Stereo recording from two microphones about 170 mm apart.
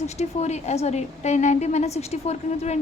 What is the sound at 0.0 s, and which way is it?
A woman's voice, 40° left (ahead or behind).